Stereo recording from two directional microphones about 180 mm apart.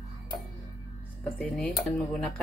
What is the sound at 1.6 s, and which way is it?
Speech, 5° left (ahead or behind).